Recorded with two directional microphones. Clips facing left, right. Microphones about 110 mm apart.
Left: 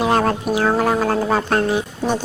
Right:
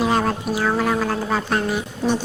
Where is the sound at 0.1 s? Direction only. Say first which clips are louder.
Left 3 dB; 55° left (ahead or behind).